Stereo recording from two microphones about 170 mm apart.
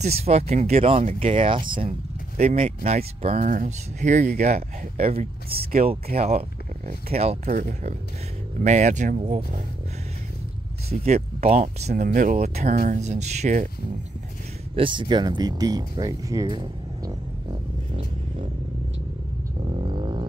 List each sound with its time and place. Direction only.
0.0 s speech: 40° right (ahead or behind)
5.5 s speech: 65° right (ahead or behind)
6.1 s speech: 40° right (ahead or behind)
8.6 s speech: 45° right (ahead or behind)
11.1 s speech: 40° right (ahead or behind)
14.8 s speech: 30° right (ahead or behind)
19.8 s a sound: 30° right (ahead or behind)